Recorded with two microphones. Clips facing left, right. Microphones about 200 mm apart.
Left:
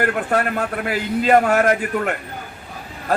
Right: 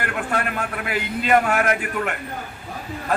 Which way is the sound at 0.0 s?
40° left (ahead or behind).